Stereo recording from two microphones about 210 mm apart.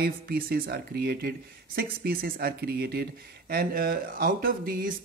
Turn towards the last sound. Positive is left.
turn(degrees=-45)  # may be behind; listen again after turning